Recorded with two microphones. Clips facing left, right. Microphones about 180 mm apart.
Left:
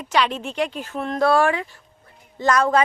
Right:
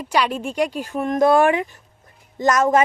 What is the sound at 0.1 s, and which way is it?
Speech, 10° right (ahead or behind).